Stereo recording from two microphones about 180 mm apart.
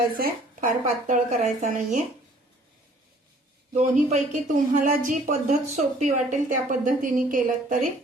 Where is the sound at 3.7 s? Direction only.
40° right (ahead or behind).